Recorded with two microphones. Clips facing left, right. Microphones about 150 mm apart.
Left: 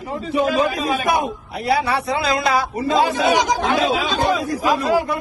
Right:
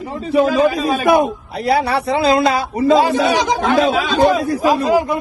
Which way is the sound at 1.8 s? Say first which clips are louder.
Right 4 dB; 30° right (ahead or behind).